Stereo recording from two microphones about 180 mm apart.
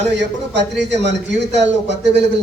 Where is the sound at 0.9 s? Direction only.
75° right (ahead or behind).